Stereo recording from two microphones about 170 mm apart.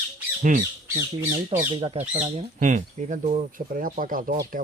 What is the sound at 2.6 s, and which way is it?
Speech, 45° right (ahead or behind).